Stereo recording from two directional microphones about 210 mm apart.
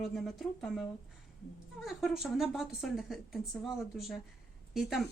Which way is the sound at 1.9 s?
Centre (ahead or behind).